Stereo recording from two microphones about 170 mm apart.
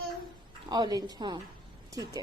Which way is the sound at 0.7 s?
25° right (ahead or behind).